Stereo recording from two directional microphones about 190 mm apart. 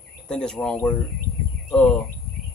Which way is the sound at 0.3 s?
5° left (ahead or behind).